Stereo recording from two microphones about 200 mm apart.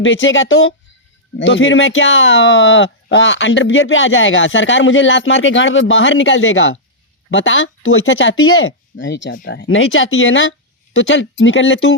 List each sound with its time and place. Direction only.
0.0 s speech: 70° left (ahead or behind)
1.4 s speech: 65° left (ahead or behind)
9.3 s speech: 50° left (ahead or behind); by 11.9 s 85° left